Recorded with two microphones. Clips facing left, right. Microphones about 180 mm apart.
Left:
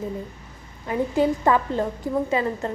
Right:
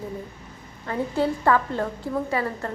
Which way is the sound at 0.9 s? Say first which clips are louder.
Left 3 dB; 15° left (ahead or behind).